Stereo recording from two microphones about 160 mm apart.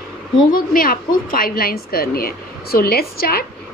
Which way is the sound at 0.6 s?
65° left (ahead or behind).